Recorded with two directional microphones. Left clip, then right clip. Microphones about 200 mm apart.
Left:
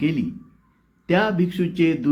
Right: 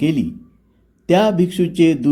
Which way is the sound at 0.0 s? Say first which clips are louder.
Right 5 dB; 40° right (ahead or behind).